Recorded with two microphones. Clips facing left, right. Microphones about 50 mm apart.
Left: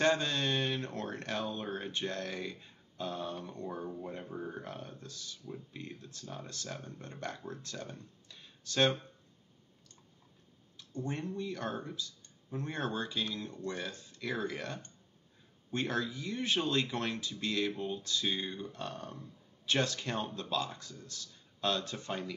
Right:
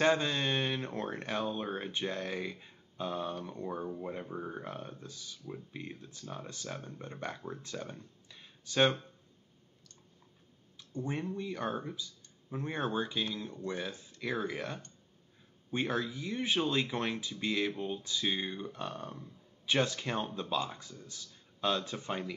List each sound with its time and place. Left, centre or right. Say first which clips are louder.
0.0 s speech: right 1 dB; centre
10.8 s speech: right 1 dB; centre